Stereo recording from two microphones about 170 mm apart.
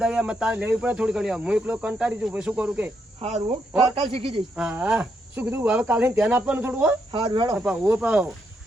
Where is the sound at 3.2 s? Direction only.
40° right (ahead or behind).